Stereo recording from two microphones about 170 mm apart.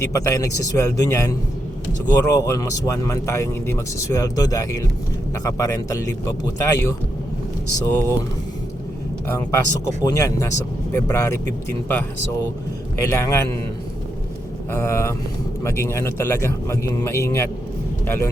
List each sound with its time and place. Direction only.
0.0 s a man's voice: 20° left (ahead or behind)
10.0 s a man's voice: 20° left (ahead or behind)
14.7 s a man's voice: 15° left (ahead or behind)